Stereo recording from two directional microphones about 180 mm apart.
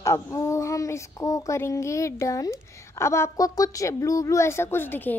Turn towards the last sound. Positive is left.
turn(degrees=10)  # may be behind; listen again after turning